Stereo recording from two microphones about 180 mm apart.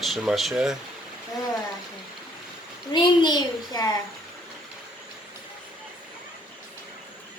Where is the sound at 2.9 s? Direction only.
25° left (ahead or behind).